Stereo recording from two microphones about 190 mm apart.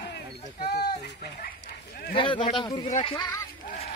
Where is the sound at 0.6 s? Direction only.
55° left (ahead or behind).